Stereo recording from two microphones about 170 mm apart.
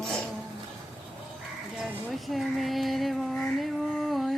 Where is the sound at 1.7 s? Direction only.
Centre (ahead or behind).